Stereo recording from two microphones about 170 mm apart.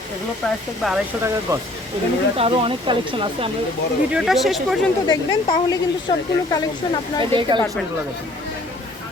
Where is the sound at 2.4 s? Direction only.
30° right (ahead or behind).